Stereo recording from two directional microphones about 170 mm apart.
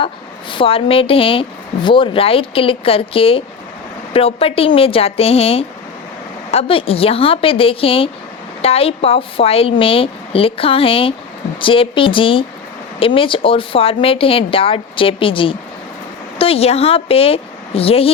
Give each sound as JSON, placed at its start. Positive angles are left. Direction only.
{"t": 0.5, "sound": "speech", "side_deg": 30}